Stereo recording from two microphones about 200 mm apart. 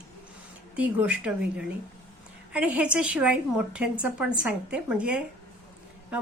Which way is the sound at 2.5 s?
5° right (ahead or behind).